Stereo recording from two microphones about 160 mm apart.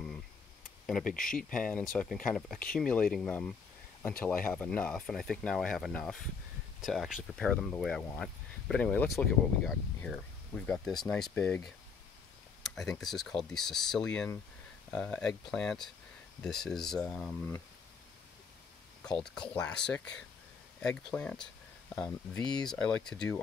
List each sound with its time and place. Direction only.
1.0 s speech: 60° left (ahead or behind)
1.5 s speech: 5° left (ahead or behind)
12.6 s a sound: centre (ahead or behind)
13.0 s speech: centre (ahead or behind)
19.1 s speech: 5° left (ahead or behind)